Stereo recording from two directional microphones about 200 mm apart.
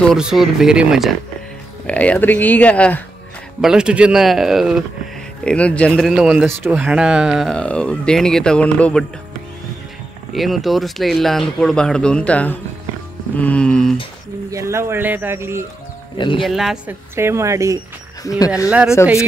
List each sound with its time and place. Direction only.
0.0 s speech: centre (ahead or behind)
3.6 s speech: 5° right (ahead or behind)
10.3 s speech: centre (ahead or behind)
14.5 s speech: 15° right (ahead or behind)
16.2 s speech: 25° left (ahead or behind)
16.4 s speech: centre (ahead or behind)
17.1 s speech: 15° right (ahead or behind)